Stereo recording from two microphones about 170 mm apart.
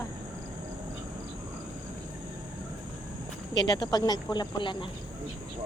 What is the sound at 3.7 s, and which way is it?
Speech, 25° left (ahead or behind).